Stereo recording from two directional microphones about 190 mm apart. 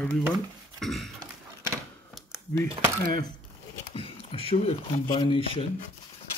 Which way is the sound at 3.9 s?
30° left (ahead or behind).